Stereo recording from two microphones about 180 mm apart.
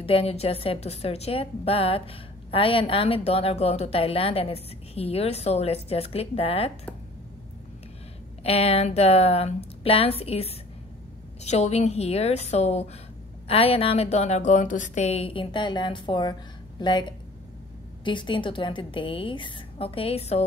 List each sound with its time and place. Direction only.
0.0 s a woman's voice: 30° left (ahead or behind)
8.5 s a woman's voice: 35° left (ahead or behind)
18.0 s a woman's voice: 25° left (ahead or behind)